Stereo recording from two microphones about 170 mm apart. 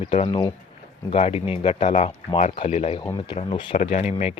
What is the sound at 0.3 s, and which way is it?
Speech, 25° left (ahead or behind).